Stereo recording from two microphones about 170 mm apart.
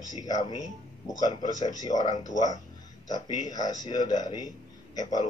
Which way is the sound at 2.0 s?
45° left (ahead or behind).